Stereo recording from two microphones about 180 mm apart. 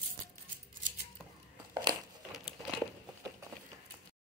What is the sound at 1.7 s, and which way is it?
Crumpling, 25° right (ahead or behind).